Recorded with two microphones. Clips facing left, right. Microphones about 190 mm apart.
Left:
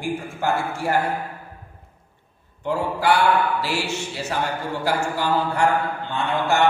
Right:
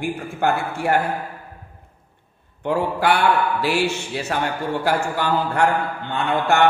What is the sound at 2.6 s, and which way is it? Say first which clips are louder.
Speech: right 2 dB; 60° right (ahead or behind).